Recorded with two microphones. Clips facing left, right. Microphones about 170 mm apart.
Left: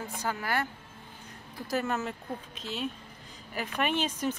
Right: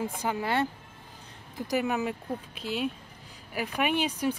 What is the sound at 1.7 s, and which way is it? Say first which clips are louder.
Speech: right 3 dB; 15° right (ahead or behind).